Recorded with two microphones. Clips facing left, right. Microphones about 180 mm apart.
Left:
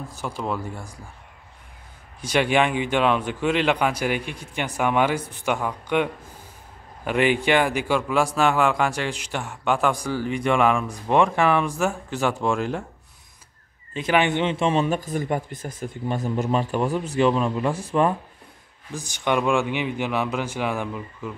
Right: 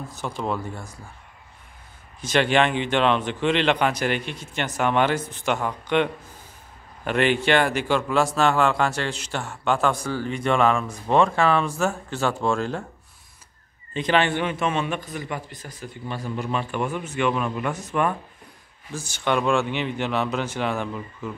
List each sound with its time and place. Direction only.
0.1 s speech: 10° left (ahead or behind)
2.2 s speech: 10° left (ahead or behind)
7.1 s speech: 10° left (ahead or behind)
13.9 s speech: 5° left (ahead or behind)
14.2 s a man's voice: 20° left (ahead or behind)
18.9 s speech: 15° left (ahead or behind)